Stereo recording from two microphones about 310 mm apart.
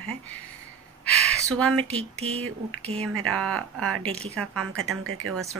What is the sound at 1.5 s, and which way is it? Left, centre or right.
Speech, centre.